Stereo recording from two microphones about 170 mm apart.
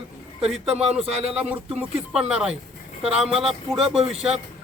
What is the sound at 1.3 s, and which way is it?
Speech, 5° right (ahead or behind).